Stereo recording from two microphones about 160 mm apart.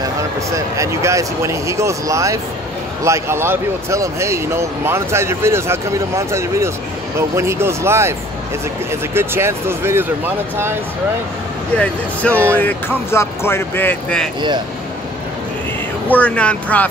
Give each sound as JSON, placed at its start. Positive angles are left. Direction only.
{"t": 0.5, "sound": "speech", "side_deg": -20}
{"t": 9.1, "sound": "speech", "side_deg": -15}
{"t": 11.7, "sound": "speech", "side_deg": 10}
{"t": 16.1, "sound": "speech", "side_deg": 10}